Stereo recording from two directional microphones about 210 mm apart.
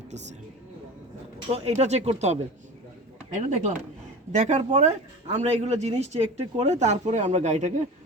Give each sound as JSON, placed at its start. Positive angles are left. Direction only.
{"t": 1.5, "sound": "speech", "side_deg": -30}